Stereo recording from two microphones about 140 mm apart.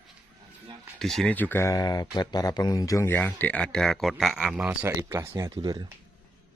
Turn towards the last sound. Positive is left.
turn(degrees=-30)  # may be behind; listen again after turning